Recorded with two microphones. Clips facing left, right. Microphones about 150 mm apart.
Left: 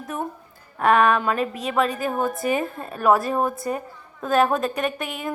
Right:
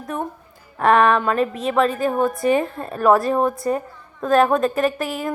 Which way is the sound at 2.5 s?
35° right (ahead or behind).